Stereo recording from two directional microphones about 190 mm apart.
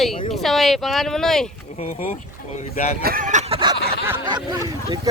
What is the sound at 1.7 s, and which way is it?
Speech, 35° left (ahead or behind).